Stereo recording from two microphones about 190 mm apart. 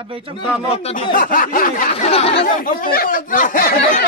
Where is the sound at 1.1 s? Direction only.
45° left (ahead or behind).